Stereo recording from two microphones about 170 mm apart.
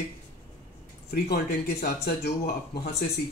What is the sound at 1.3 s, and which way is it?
Speech, 65° left (ahead or behind).